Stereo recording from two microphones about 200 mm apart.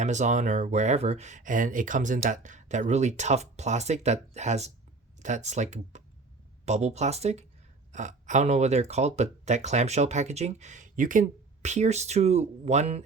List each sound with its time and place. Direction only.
0.0 s speech: 35° right (ahead or behind)